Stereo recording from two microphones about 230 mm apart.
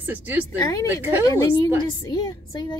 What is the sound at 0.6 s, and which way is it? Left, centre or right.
Speech, centre.